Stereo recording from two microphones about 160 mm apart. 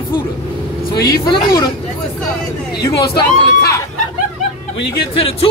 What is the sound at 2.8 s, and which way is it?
Speech, 20° left (ahead or behind).